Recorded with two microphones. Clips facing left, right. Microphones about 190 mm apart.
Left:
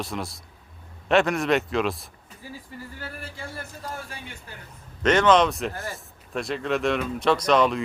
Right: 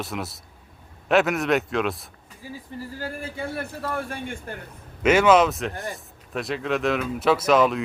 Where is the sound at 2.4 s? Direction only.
15° right (ahead or behind).